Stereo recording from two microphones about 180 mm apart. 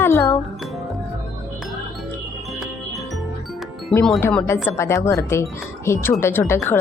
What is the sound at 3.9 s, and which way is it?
Speech, 10° left (ahead or behind).